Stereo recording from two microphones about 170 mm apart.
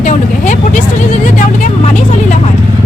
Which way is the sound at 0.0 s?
45° left (ahead or behind).